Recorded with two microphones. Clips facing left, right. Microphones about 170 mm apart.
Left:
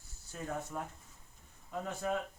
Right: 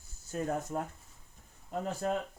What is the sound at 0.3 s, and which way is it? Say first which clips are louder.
Speech: right 6 dB; 45° right (ahead or behind).